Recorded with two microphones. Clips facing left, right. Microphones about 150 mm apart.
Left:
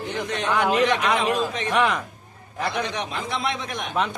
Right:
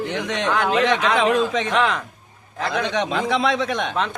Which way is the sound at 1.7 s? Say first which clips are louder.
Right 1 dB; 10° left (ahead or behind).